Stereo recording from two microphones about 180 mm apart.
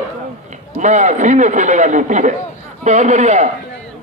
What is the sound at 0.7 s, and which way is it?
A man's voice, 40° right (ahead or behind).